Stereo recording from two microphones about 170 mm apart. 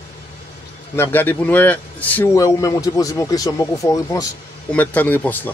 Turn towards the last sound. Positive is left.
turn(degrees=10)  # may be behind; listen again after turning